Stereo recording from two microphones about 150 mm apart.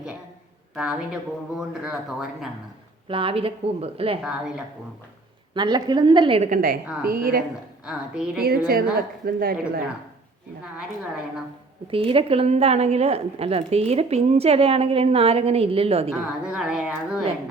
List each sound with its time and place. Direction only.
0.8 s speech: 5° right (ahead or behind)
3.1 s a woman's voice: 35° right (ahead or behind)
4.2 s speech: 5° right (ahead or behind)
5.5 s a woman's voice: 30° right (ahead or behind)
6.5 s a woman's voice: 90° right
7.0 s a woman's voice: 75° right (ahead or behind)
7.9 s speech: 5° right (ahead or behind)
8.4 s a woman's voice: 80° right
11.9 s a woman's voice: 35° right (ahead or behind)
16.4 s speech: 5° right (ahead or behind)